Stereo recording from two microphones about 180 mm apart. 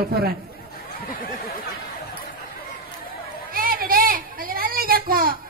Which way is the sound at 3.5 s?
55° right (ahead or behind).